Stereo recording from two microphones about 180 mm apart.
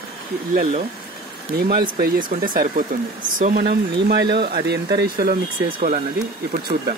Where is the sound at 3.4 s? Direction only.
50° right (ahead or behind).